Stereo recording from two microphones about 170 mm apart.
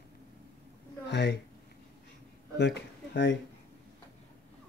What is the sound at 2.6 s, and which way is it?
Speech, 85° left.